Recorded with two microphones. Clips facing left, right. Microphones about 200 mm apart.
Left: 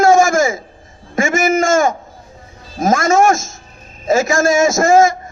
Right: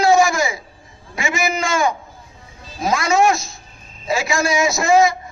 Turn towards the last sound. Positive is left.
turn(degrees=45)  # may be behind; listen again after turning